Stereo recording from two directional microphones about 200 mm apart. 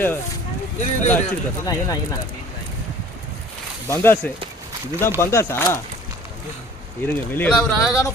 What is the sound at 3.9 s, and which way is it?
Speech, 10° left (ahead or behind).